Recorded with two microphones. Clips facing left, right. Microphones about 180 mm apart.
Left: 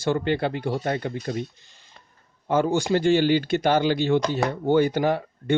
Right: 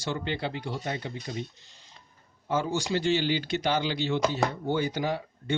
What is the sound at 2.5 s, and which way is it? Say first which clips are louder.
Speech: left 7 dB; 60° left (ahead or behind).